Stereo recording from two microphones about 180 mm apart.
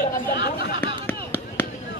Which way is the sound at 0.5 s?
60° left (ahead or behind).